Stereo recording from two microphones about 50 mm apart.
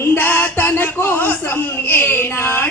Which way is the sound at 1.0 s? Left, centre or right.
Left.